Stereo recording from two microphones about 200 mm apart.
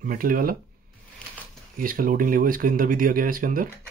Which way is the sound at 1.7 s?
45° right (ahead or behind).